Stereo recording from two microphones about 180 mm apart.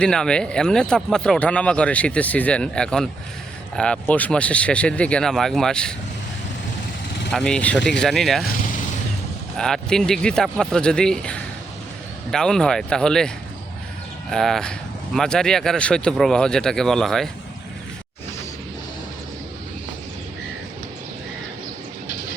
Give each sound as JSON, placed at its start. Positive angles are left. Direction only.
{"t": 0.0, "sound": "speech", "side_deg": 5}
{"t": 7.3, "sound": "speech", "side_deg": 5}
{"t": 9.6, "sound": "speech", "side_deg": 5}